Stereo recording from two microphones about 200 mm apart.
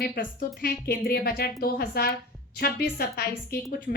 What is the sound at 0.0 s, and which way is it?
A woman's voice, 50° left (ahead or behind).